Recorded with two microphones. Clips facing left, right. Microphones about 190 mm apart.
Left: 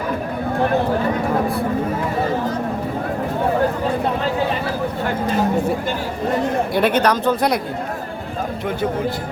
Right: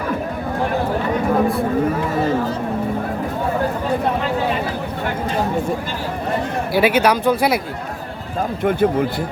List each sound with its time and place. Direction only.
6.7 s speech: 5° right (ahead or behind)
8.6 s a man's voice: 55° right (ahead or behind)